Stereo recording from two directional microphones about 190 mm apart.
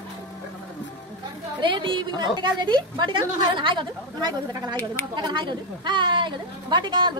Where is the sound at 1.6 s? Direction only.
25° right (ahead or behind).